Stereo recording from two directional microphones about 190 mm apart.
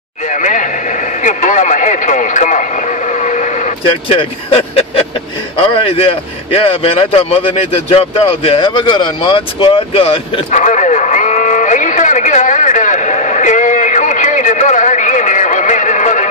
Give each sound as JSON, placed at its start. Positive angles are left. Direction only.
{"t": 0.3, "sound": "speech", "side_deg": 40}
{"t": 4.2, "sound": "speech", "side_deg": 30}